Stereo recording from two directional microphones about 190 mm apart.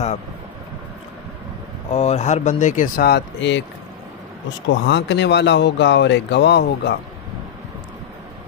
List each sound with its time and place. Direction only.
1.9 s speech: 35° left (ahead or behind); by 3.6 s 65° left (ahead or behind)
4.6 s speech: 70° left (ahead or behind)